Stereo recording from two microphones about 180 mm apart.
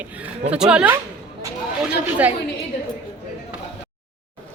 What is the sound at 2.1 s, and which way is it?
Speech, 10° right (ahead or behind).